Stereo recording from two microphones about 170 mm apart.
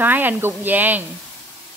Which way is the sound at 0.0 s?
10° right (ahead or behind).